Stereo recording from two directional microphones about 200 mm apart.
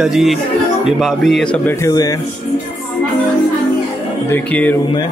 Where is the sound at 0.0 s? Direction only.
Centre (ahead or behind); by 2.1 s 20° left (ahead or behind).